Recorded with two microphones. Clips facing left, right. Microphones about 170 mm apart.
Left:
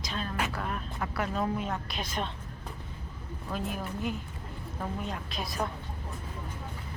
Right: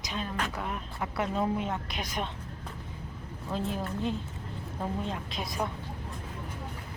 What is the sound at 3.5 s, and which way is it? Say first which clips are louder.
A woman's voice: right 2 dB; 25° right (ahead or behind).